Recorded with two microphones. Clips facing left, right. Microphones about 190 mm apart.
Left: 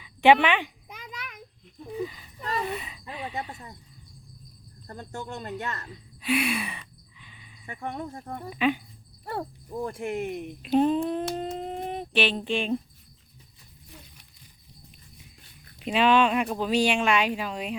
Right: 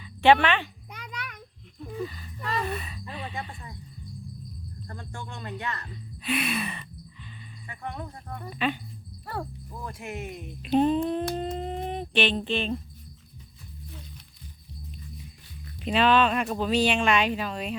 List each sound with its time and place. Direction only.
0.0 s a sound: 15° left (ahead or behind)
1.9 s speech: 15° left (ahead or behind)
4.9 s speech: 40° left (ahead or behind)
5.9 s a sound: 10° left (ahead or behind)
8.4 s speech: 10° left (ahead or behind)
9.2 s speech: 25° left (ahead or behind)
9.8 s speech: 50° left (ahead or behind)
10.6 s humming: centre (ahead or behind)
15.8 s speech: 10° left (ahead or behind)